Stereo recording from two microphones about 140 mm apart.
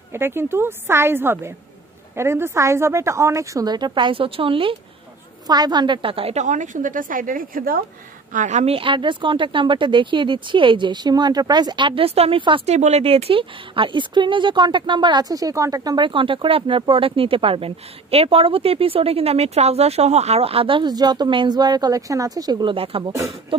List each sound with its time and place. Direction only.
0.1 s a woman's voice: 15° right (ahead or behind); by 6.4 s 45° right (ahead or behind)
6.4 s speech: 60° right (ahead or behind); by 7.8 s 90° right
8.3 s a woman's voice: 60° right (ahead or behind); by 12.6 s 35° right (ahead or behind)
12.6 s a woman's voice: 55° right (ahead or behind)